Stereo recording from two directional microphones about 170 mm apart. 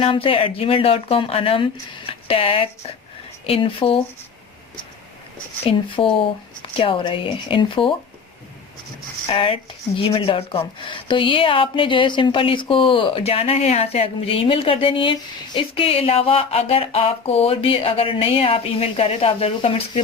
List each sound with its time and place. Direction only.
0.0 s speech: 35° left (ahead or behind)
6.0 s speech: 30° left (ahead or behind)
9.2 s speech: 30° left (ahead or behind)